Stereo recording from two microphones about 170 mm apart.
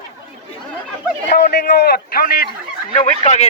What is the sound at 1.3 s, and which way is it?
A man's voice, 70° left (ahead or behind).